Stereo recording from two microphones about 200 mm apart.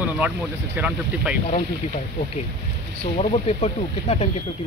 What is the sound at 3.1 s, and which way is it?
Speech, 30° left (ahead or behind).